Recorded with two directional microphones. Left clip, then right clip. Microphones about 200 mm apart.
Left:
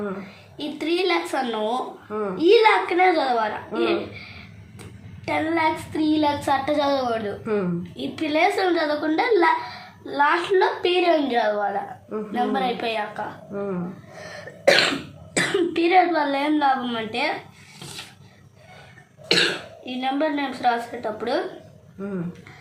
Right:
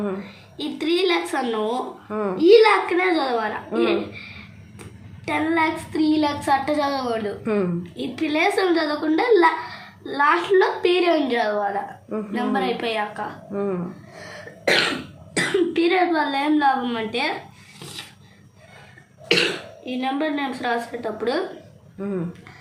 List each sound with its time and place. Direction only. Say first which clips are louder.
0.5 s child singing: right 2 dB; centre (ahead or behind)
2.0 s speech: right 3 dB; 45° right (ahead or behind)
2.4 s child singing: right 2 dB; centre (ahead or behind)
3.7 s speech: right 4 dB; 45° right (ahead or behind)
5.2 s child singing: right 1 dB; centre (ahead or behind)
13.5 s speech: right 5 dB; 45° right (ahead or behind)
14.2 s cough: left 1 dB; centre (ahead or behind)
14.6 s cough: left 2 dB; 15° left (ahead or behind)
15.4 s child singing: right 1 dB; 5° left (ahead or behind)
17.7 s filing: right 1 dB; centre (ahead or behind)
19.3 s child singing: even; centre (ahead or behind)